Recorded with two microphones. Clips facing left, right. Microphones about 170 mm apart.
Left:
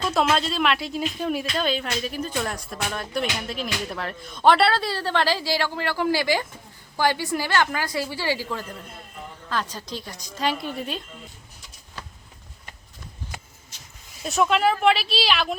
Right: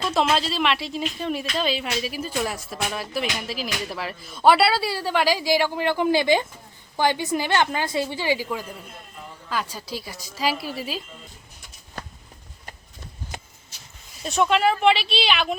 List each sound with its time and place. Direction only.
0.0 s a woman's voice: centre (ahead or behind)
13.3 s a sound: 20° right (ahead or behind)
14.3 s speech: centre (ahead or behind)